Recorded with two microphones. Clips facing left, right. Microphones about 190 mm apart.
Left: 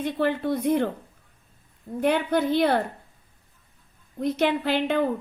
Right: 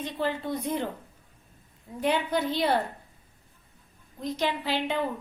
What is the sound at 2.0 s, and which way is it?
Speech, 55° left (ahead or behind).